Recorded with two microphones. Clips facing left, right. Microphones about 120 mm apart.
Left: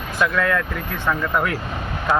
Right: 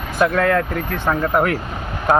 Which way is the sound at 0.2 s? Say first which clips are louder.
Right 4 dB; 45° right (ahead or behind).